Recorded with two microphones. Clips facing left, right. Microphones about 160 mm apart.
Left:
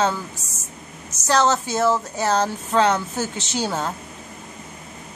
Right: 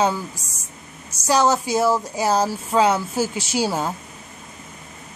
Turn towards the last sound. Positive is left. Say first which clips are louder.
# right 2 dB
turn(degrees=-10)  # may be behind; listen again after turning